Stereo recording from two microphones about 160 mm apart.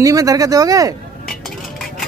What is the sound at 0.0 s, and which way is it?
Speech, 20° right (ahead or behind).